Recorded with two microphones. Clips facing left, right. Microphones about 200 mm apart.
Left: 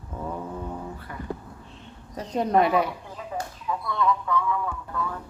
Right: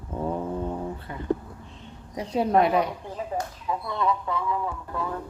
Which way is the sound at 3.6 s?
25° right (ahead or behind).